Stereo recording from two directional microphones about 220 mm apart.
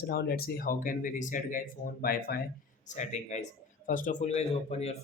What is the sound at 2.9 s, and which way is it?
Speech, 30° left (ahead or behind).